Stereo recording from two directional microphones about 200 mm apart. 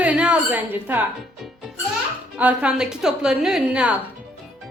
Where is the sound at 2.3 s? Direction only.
5° right (ahead or behind).